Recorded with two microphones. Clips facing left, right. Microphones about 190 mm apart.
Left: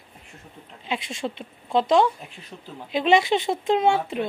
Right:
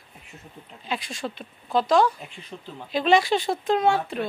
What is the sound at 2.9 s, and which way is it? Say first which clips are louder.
A woman's voice: left 1 dB; 20° left (ahead or behind).